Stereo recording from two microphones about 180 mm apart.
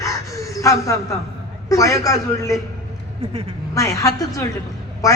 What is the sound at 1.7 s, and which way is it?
Speech, 20° left (ahead or behind).